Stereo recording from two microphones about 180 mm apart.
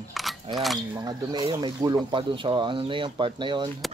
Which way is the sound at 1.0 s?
20° right (ahead or behind).